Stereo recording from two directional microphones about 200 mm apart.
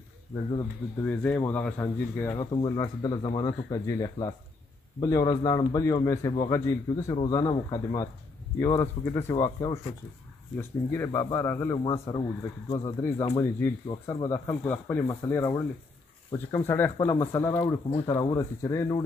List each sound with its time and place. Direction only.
1.0 s speech: 5° left (ahead or behind)
2.3 s speech: 25° left (ahead or behind)